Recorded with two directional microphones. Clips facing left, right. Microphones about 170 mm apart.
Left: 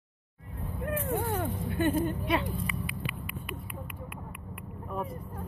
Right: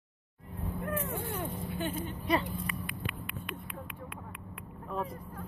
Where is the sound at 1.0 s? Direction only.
55° left (ahead or behind).